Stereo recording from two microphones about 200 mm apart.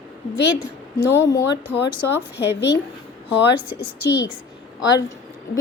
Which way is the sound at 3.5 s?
10° right (ahead or behind).